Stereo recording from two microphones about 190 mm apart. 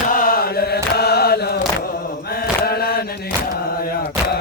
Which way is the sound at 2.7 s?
55° left (ahead or behind).